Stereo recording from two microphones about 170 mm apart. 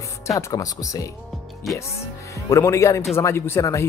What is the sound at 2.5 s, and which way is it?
Speech, 15° left (ahead or behind).